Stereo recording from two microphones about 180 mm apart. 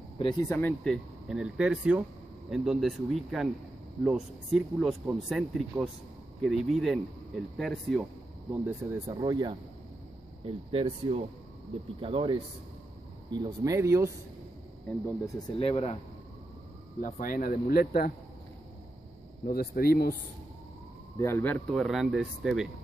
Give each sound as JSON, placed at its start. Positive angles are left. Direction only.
{"t": 0.2, "sound": "speech", "side_deg": 25}
{"t": 0.6, "sound": "speech", "side_deg": 5}
{"t": 8.5, "sound": "speech", "side_deg": -10}
{"t": 9.1, "sound": "speech", "side_deg": -25}
{"t": 15.6, "sound": "speech", "side_deg": 35}
{"t": 17.0, "sound": "speech", "side_deg": 50}
{"t": 19.4, "sound": "speech", "side_deg": 55}
{"t": 21.2, "sound": "speech", "side_deg": 10}
{"t": 21.6, "sound": "speech", "side_deg": 0}